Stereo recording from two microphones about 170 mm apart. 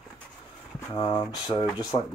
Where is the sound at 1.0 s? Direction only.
25° left (ahead or behind).